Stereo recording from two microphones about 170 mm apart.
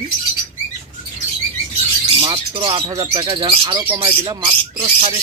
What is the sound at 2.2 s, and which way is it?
Speech, 30° right (ahead or behind).